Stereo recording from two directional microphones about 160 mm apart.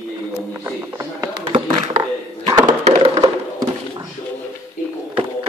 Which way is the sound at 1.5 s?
30° right (ahead or behind).